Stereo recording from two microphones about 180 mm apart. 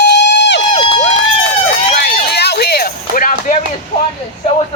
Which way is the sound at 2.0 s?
65° left (ahead or behind).